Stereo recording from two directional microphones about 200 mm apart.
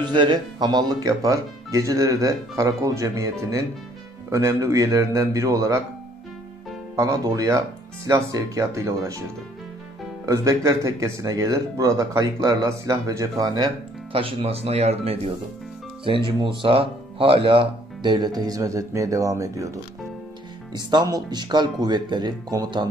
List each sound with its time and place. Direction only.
0.0 s speech: 25° right (ahead or behind)
7.0 s speech: 15° right (ahead or behind)
10.2 s speech: 15° right (ahead or behind)
14.1 s speech: 30° right (ahead or behind)